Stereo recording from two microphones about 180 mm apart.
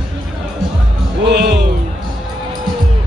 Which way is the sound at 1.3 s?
65° right (ahead or behind).